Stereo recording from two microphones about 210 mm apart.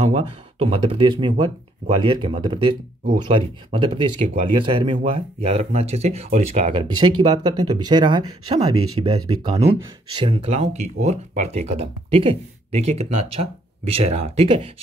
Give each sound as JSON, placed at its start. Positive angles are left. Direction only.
{"t": 0.0, "sound": "speech", "side_deg": -30}
{"t": 8.7, "sound": "speech", "side_deg": -90}
{"t": 9.4, "sound": "speech", "side_deg": -15}
{"t": 10.2, "sound": "speech", "side_deg": -25}